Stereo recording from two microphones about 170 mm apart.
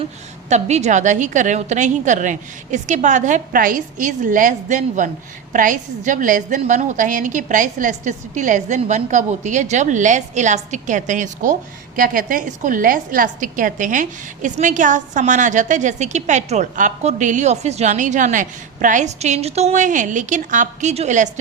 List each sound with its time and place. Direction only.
0.4 s a woman's voice: 40° right (ahead or behind)